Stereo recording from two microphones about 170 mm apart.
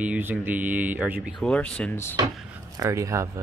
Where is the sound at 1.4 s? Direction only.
5° left (ahead or behind).